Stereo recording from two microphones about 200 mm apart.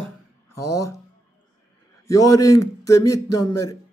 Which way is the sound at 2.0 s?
15° left (ahead or behind).